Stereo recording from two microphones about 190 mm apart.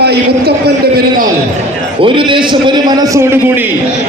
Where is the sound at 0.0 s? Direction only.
60° right (ahead or behind).